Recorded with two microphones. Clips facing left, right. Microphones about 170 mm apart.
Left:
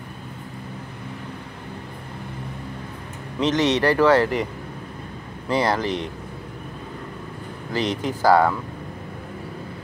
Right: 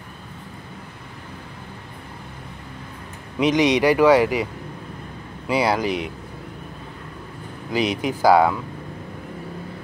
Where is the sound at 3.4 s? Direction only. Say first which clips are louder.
Right 2 dB; 15° right (ahead or behind).